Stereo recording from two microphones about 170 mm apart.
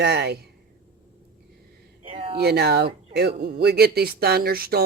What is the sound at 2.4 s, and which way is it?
Speech, 70° right (ahead or behind).